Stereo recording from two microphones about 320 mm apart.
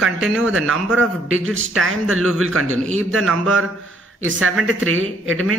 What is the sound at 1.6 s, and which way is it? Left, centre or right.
Speech, right.